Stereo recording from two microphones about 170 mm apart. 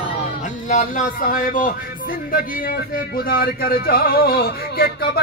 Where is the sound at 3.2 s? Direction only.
60° left (ahead or behind).